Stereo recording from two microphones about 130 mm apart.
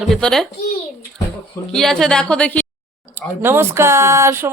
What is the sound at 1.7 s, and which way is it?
Speech, 5° left (ahead or behind).